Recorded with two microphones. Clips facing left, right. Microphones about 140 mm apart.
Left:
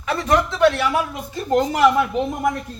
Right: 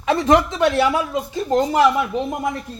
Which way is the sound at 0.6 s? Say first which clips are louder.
Even; 25° right (ahead or behind).